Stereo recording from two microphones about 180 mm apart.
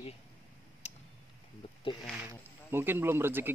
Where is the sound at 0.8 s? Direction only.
35° left (ahead or behind).